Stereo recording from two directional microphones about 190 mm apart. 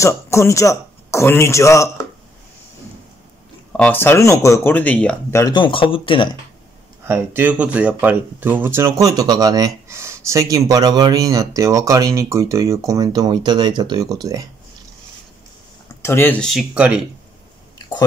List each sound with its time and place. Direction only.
0.0 s speech: 15° left (ahead or behind)
3.7 s speech: 5° left (ahead or behind)
5.4 s speech: 25° left (ahead or behind)
7.1 s speech: 10° right (ahead or behind)
16.0 s speech: 10° left (ahead or behind); by 17.0 s 5° right (ahead or behind)
17.7 s a sound: 20° left (ahead or behind)